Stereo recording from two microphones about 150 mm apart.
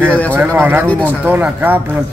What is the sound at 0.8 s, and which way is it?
Speech, 10° left (ahead or behind).